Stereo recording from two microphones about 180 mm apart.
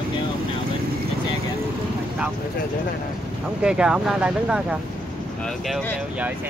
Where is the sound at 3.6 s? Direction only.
5° right (ahead or behind).